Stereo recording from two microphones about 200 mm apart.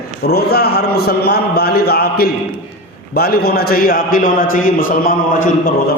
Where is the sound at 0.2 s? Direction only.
50° left (ahead or behind).